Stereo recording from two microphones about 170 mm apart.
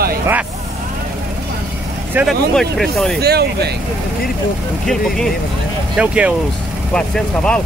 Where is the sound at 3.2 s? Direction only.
70° right (ahead or behind).